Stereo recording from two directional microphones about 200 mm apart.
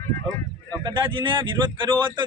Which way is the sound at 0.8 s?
25° right (ahead or behind).